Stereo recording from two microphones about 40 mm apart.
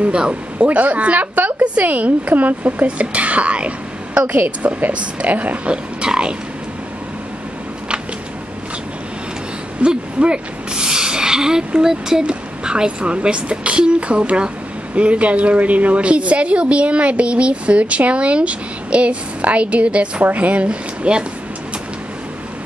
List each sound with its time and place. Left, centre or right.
0.0 s speech: right
0.7 s a woman's voice: right
5.7 s speech: right
9.8 s a woman's voice: right